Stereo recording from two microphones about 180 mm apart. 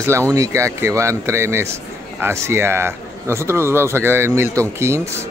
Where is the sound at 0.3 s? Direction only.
15° right (ahead or behind).